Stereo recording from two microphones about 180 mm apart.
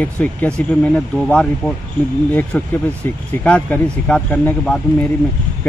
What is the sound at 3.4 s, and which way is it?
Speech, 10° left (ahead or behind).